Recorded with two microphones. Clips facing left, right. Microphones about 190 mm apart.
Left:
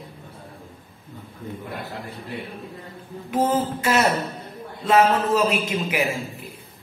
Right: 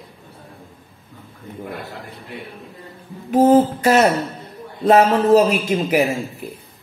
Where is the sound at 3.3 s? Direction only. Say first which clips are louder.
Right 9 dB; 40° right (ahead or behind).